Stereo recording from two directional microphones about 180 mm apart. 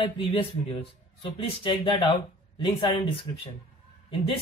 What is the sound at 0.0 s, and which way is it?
A man's voice, 30° left (ahead or behind).